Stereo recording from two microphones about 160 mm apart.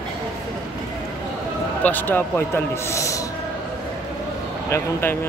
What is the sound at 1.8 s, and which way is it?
A man's voice, 10° left (ahead or behind).